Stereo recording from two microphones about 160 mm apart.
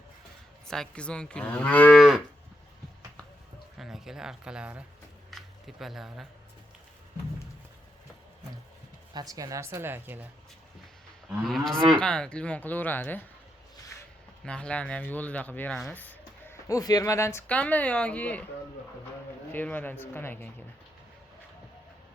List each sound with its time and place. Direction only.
0.7 s moo: 5° left (ahead or behind)
3.8 s speech: 5° right (ahead or behind)
5.3 s camera: centre (ahead or behind)
9.1 s speech: 20° right (ahead or behind)
11.3 s moo: centre (ahead or behind)
11.9 s speech: 5° left (ahead or behind)
14.4 s speech: 5° left (ahead or behind)
19.5 s speech: 10° left (ahead or behind)